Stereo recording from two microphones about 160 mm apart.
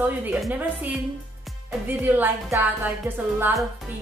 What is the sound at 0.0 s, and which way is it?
Speech, 10° right (ahead or behind).